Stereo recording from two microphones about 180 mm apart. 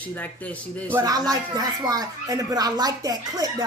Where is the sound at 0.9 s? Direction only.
20° right (ahead or behind).